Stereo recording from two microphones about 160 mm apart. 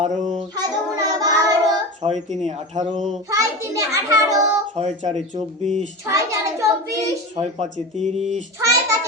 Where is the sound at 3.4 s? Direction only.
20° right (ahead or behind).